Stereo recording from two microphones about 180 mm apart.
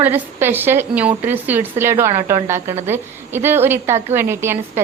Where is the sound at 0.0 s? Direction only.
10° right (ahead or behind).